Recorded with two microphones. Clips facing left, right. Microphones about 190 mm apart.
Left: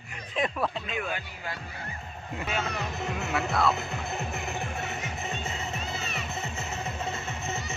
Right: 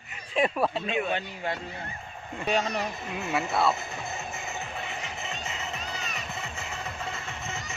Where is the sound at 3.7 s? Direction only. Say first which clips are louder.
Left 3 dB; 65° left (ahead or behind); by 4.9 s 50° left (ahead or behind).